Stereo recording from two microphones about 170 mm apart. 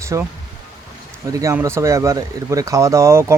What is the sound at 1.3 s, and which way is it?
Speech, 15° right (ahead or behind).